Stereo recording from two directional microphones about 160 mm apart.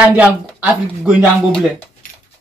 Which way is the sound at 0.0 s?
10° right (ahead or behind).